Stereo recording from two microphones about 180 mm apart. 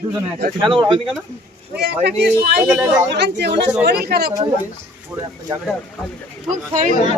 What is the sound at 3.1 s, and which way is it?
Speech, 70° right (ahead or behind).